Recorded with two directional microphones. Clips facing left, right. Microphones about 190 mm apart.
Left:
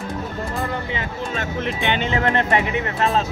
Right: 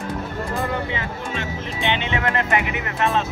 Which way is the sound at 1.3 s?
50° left (ahead or behind).